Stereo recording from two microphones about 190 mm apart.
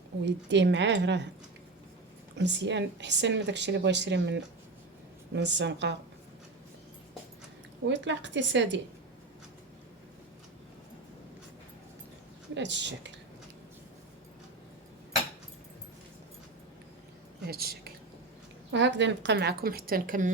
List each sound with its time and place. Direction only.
0.3 s speech: 65° right (ahead or behind)
2.3 s speech: 65° right (ahead or behind)
7.9 s speech: 70° right (ahead or behind)
12.5 s speech: 70° right (ahead or behind)
17.4 s a woman's voice: 55° right (ahead or behind)
18.7 s speech: 70° right (ahead or behind); by 20.3 s 45° right (ahead or behind)